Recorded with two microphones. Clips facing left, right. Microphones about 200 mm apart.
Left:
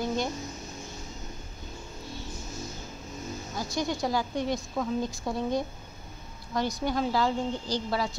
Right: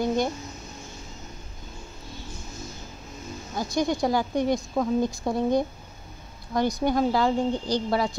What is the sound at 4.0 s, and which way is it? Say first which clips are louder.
Speech: right 5 dB; 55° right (ahead or behind).